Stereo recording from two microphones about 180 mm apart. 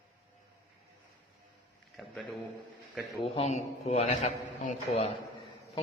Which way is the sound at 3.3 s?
35° left (ahead or behind).